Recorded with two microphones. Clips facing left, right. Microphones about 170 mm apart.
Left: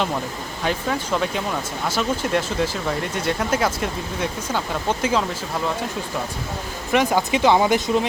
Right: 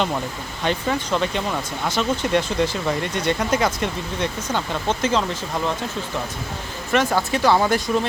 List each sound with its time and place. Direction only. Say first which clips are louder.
0.6 s speech: right 1 dB; 5° left (ahead or behind)
6.9 s speech: left 1 dB; 15° left (ahead or behind)